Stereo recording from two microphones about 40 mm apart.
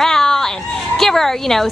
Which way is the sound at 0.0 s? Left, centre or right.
Centre.